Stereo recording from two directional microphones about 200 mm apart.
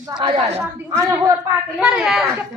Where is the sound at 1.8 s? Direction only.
Centre (ahead or behind).